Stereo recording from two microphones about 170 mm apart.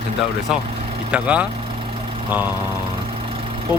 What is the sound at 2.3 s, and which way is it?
Lawn mower, 10° right (ahead or behind).